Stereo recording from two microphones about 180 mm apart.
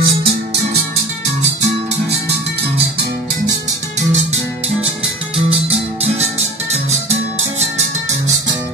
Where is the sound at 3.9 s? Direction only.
35° right (ahead or behind).